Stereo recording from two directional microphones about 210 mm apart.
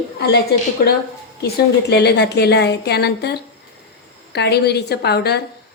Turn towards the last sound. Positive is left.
turn(degrees=50)  # may be behind; listen again after turning